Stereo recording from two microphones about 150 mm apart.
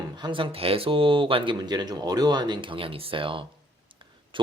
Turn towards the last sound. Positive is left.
turn(degrees=-35)  # may be behind; listen again after turning